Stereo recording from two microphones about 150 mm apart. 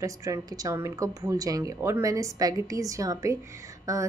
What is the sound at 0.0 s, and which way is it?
Speech, 20° right (ahead or behind).